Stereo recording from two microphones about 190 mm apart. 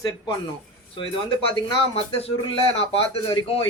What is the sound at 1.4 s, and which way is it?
Speech, 30° left (ahead or behind).